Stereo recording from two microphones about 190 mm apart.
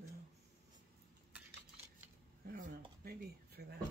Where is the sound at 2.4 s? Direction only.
50° right (ahead or behind).